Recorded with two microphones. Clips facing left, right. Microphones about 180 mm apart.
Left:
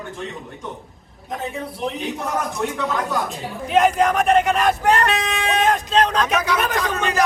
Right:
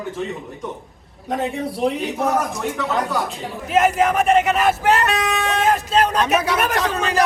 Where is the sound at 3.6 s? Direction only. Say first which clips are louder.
Even; 5° right (ahead or behind).